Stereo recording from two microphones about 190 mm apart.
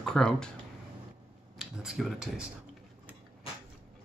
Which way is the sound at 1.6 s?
5° right (ahead or behind).